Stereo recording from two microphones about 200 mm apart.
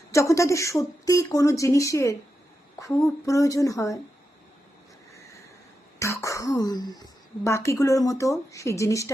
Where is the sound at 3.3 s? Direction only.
15° left (ahead or behind).